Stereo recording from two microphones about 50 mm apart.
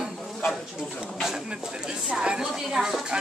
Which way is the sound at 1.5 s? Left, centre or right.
Centre.